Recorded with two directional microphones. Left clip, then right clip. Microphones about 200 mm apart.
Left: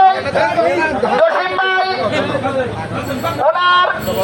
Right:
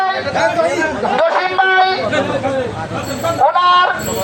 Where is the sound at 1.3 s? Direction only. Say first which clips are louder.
Right 2 dB; 20° right (ahead or behind).